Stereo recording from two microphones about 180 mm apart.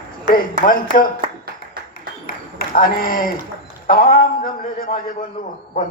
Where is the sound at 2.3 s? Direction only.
55° left (ahead or behind).